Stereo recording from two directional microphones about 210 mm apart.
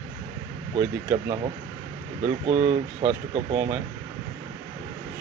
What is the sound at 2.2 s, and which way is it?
Speech, 30° right (ahead or behind).